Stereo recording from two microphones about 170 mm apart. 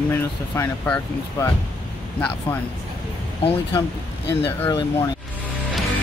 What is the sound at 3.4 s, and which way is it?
Speech, 35° left (ahead or behind).